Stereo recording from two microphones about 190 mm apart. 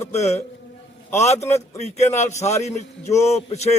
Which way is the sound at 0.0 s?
35° left (ahead or behind).